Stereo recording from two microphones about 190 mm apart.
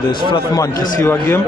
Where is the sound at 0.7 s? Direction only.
45° left (ahead or behind).